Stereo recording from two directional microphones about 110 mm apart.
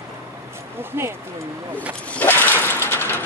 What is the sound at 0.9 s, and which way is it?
Speech, 25° right (ahead or behind).